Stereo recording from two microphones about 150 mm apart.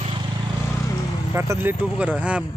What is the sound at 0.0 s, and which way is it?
Vehicle, 35° right (ahead or behind).